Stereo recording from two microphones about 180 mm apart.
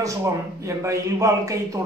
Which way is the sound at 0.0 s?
15° right (ahead or behind).